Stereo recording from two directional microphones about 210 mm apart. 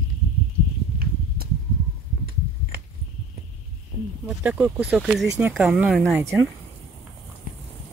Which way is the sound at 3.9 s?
50° right (ahead or behind).